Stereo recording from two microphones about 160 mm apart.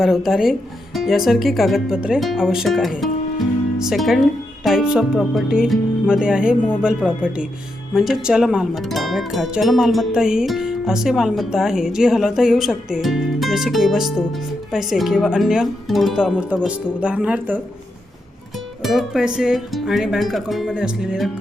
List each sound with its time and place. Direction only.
0.3 s speech: centre (ahead or behind)
18.8 s speech: centre (ahead or behind)